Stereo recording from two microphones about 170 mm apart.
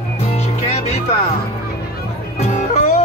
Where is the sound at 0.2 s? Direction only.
40° left (ahead or behind).